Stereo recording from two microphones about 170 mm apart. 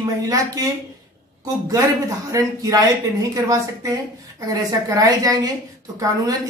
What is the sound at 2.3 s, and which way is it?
Speech, 20° right (ahead or behind).